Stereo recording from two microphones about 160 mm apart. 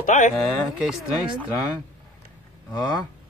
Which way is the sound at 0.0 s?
50° left (ahead or behind).